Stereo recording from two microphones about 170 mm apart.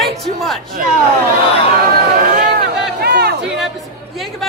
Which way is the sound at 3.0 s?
70° right (ahead or behind).